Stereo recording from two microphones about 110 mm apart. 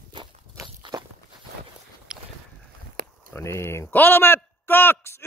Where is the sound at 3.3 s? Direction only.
25° left (ahead or behind).